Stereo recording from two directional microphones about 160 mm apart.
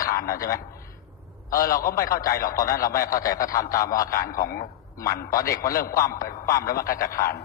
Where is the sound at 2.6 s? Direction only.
65° left (ahead or behind).